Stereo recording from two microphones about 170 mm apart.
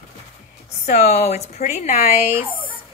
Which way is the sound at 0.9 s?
40° left (ahead or behind).